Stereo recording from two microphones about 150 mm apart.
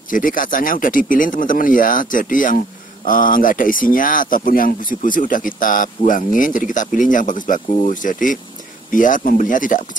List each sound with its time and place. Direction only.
0.1 s speech: 65° left (ahead or behind)